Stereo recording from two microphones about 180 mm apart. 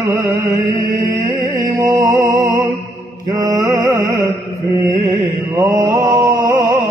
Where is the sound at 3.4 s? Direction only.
20° right (ahead or behind).